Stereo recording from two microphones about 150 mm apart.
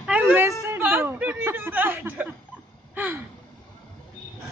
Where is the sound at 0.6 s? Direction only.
15° right (ahead or behind).